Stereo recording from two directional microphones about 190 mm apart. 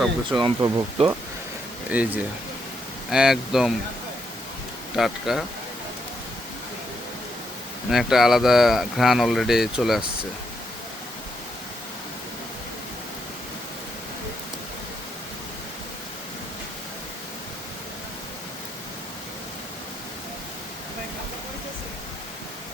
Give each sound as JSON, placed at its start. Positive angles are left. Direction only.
{"t": 0.3, "sound": "speech", "side_deg": -25}
{"t": 1.9, "sound": "speech", "side_deg": -10}
{"t": 4.9, "sound": "speech", "side_deg": 0}
{"t": 7.9, "sound": "speech", "side_deg": 0}